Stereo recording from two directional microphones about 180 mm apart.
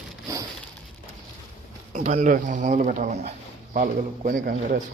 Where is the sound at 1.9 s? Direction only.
40° right (ahead or behind).